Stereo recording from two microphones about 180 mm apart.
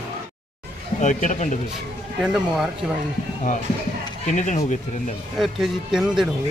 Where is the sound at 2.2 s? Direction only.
5° right (ahead or behind).